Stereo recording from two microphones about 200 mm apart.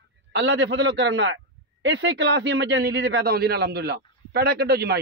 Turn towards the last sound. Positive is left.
turn(degrees=-50)  # may be behind; listen again after turning